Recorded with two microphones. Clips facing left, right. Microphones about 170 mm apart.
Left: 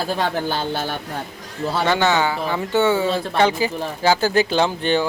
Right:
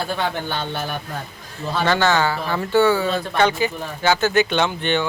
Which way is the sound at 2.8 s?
25° left (ahead or behind).